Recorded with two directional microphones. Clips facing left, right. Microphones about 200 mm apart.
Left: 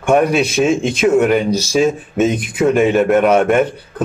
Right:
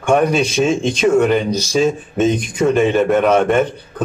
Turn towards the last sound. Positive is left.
turn(degrees=10)  # may be behind; listen again after turning